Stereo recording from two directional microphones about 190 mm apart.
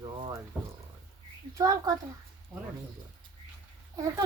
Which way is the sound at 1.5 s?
15° right (ahead or behind).